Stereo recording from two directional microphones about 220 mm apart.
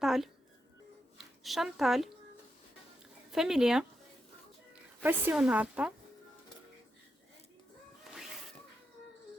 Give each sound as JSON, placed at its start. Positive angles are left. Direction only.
{"t": 0.0, "sound": "a woman's voice", "side_deg": 0}
{"t": 3.3, "sound": "speech", "side_deg": 0}
{"t": 8.1, "sound": "music", "side_deg": 0}